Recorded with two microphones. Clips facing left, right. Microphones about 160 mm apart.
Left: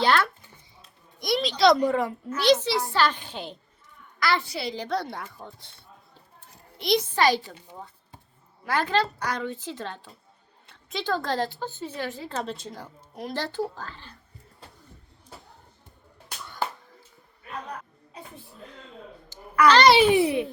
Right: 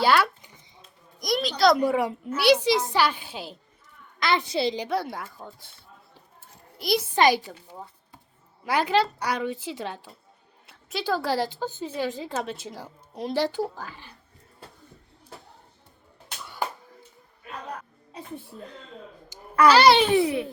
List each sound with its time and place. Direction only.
0.0 s a sound: 10° right (ahead or behind)
1.2 s a woman's voice: centre (ahead or behind)
4.2 s a child's voice: 20° right (ahead or behind)
5.1 s speech: 5° right (ahead or behind)
6.7 s a child's voice: 5° right (ahead or behind)
7.2 s a woman's voice: 15° right (ahead or behind)
8.6 s a woman's voice: 15° right (ahead or behind)
12.4 s a woman's voice: 5° right (ahead or behind)
16.4 s a sound: 10° right (ahead or behind)
19.6 s a woman's voice: 5° right (ahead or behind)
20.0 s a child's voice: 15° left (ahead or behind)